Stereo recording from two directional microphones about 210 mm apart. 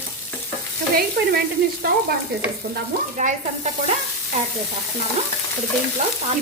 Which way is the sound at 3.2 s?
35° right (ahead or behind).